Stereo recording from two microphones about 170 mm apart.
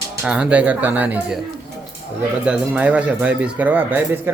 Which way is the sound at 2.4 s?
5° right (ahead or behind).